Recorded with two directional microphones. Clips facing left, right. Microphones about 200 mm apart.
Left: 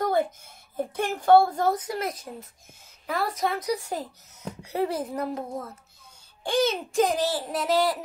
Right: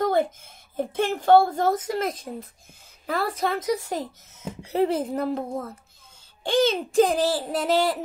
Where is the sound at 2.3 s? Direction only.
40° right (ahead or behind).